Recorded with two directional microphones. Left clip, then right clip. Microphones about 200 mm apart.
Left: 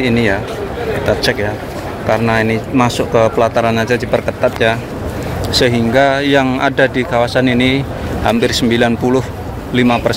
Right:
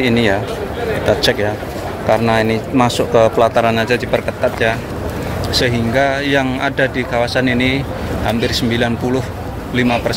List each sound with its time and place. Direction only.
0.0 s speech: centre (ahead or behind)
5.6 s speech: 25° left (ahead or behind)
8.3 s speech: 30° left (ahead or behind)